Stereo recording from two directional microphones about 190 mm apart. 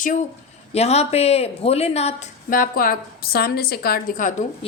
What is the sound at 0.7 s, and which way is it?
Speech, 35° left (ahead or behind).